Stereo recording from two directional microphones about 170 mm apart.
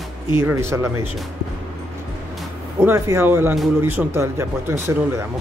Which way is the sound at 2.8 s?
15° right (ahead or behind).